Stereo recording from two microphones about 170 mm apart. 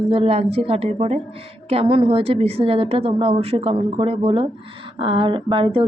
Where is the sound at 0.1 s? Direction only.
35° right (ahead or behind).